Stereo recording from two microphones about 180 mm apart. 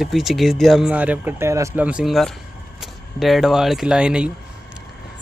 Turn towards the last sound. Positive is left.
turn(degrees=-5)  # may be behind; listen again after turning